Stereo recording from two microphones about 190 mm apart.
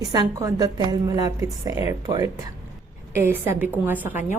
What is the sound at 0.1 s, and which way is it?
A woman's voice, 20° right (ahead or behind).